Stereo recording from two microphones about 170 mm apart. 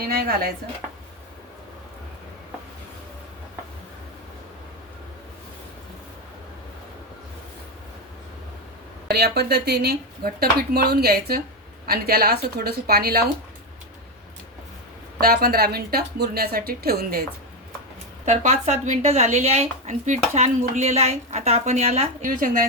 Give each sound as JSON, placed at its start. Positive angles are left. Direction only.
{"t": 0.0, "sound": "a woman's voice", "side_deg": -60}
{"t": 9.0, "sound": "speech", "side_deg": -75}
{"t": 15.2, "sound": "a woman's voice", "side_deg": -60}
{"t": 18.3, "sound": "a woman's voice", "side_deg": -45}